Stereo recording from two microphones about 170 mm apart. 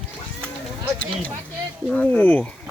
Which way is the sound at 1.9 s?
10° left (ahead or behind).